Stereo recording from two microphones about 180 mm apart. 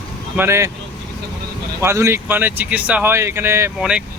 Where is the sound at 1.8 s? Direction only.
15° right (ahead or behind).